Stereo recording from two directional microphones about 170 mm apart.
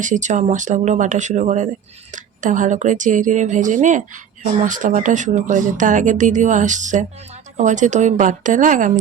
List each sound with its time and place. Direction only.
0.0 s a woman's voice: 45° right (ahead or behind)